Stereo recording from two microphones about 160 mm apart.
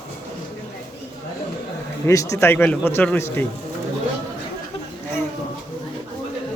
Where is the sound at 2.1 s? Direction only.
20° left (ahead or behind).